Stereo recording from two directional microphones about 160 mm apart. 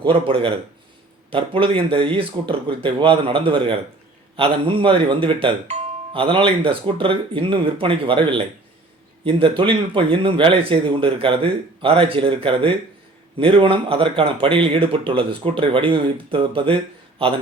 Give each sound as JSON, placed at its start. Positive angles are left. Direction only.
{"t": 0.0, "sound": "speech", "side_deg": -35}